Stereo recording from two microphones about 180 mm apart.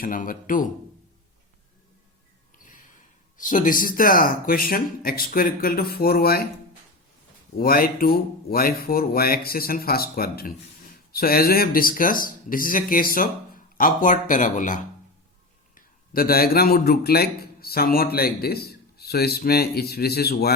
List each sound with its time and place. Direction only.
0.0 s speech: 50° left (ahead or behind)
2.6 s snort: 50° left (ahead or behind)
3.3 s speech: 45° left (ahead or behind)
7.5 s a man's voice: 55° left (ahead or behind)